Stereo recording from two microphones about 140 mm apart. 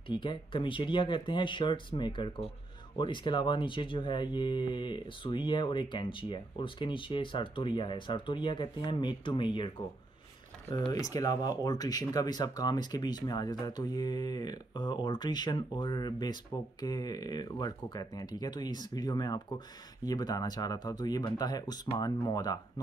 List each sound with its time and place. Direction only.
0.1 s speech: 35° left (ahead or behind)
10.9 s speech: 25° left (ahead or behind)